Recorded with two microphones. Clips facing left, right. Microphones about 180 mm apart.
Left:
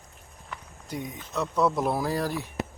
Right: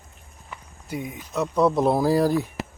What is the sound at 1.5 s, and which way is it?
Speech, 25° right (ahead or behind).